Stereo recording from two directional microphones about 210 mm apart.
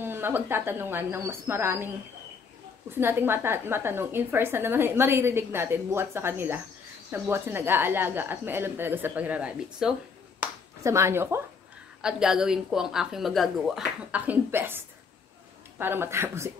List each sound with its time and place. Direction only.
0.0 s a woman's voice: 10° right (ahead or behind)
2.9 s a woman's voice: 10° right (ahead or behind)
15.8 s a woman's voice: 10° right (ahead or behind)